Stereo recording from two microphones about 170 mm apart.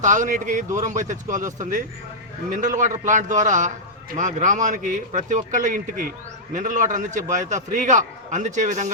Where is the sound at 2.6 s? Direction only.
50° right (ahead or behind).